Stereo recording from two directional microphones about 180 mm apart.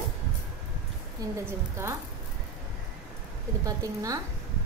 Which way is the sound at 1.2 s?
20° right (ahead or behind).